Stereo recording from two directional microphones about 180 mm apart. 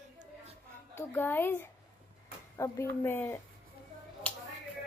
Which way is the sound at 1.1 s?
10° left (ahead or behind).